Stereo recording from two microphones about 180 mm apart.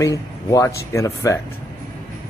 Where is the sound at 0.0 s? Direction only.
20° left (ahead or behind).